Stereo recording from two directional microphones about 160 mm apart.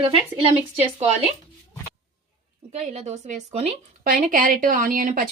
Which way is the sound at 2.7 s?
45° right (ahead or behind).